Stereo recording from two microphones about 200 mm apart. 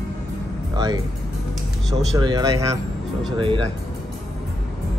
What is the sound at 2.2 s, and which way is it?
Speech, 20° right (ahead or behind).